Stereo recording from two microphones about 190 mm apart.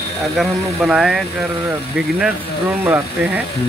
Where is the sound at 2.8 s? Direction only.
10° right (ahead or behind).